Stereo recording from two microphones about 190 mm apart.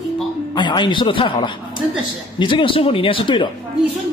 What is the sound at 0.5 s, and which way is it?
Speech, 25° left (ahead or behind).